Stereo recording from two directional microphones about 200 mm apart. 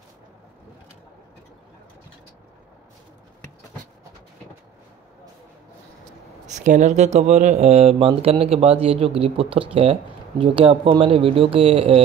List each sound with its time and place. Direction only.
6.4 s speech: 35° right (ahead or behind)